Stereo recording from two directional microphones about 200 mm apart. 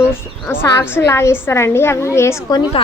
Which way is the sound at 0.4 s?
10° left (ahead or behind).